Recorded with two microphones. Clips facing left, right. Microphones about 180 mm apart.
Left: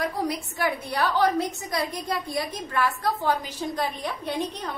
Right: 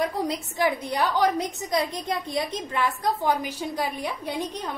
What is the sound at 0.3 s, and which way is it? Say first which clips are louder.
A woman's voice: right 2 dB; 20° right (ahead or behind).